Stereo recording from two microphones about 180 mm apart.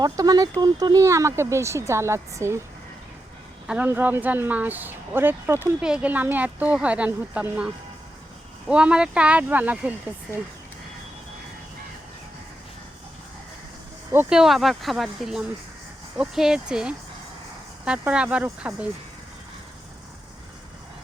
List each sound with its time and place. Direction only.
0.0 s speech: 20° right (ahead or behind)
3.7 s speech: 10° right (ahead or behind)
14.1 s speech: 10° right (ahead or behind)